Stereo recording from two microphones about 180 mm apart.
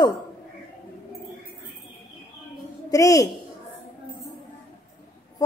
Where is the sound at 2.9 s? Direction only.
20° left (ahead or behind).